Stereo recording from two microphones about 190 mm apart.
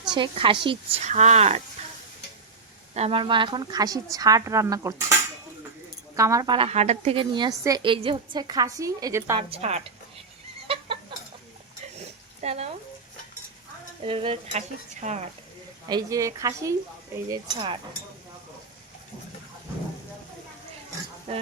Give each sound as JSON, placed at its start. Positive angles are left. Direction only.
{"t": 0.1, "sound": "a woman's voice", "side_deg": -25}
{"t": 2.9, "sound": "a woman's voice", "side_deg": -30}
{"t": 6.1, "sound": "a woman's voice", "side_deg": -15}
{"t": 9.5, "sound": "a woman's voice", "side_deg": -35}
{"t": 10.7, "sound": "chicken", "side_deg": -30}
{"t": 11.9, "sound": "a sound", "side_deg": -35}
{"t": 14.0, "sound": "a woman's voice", "side_deg": -30}
{"t": 15.9, "sound": "a woman's voice", "side_deg": -20}